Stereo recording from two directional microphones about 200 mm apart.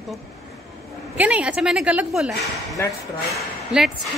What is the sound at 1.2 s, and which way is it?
A woman's voice, 5° right (ahead or behind).